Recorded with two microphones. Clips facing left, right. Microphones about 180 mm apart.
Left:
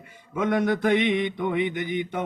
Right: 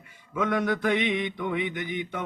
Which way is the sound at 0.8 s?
45° left (ahead or behind).